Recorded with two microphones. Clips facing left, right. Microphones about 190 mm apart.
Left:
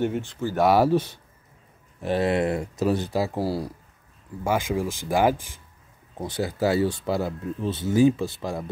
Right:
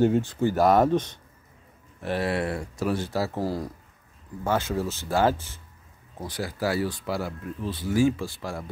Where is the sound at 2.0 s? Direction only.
20° left (ahead or behind).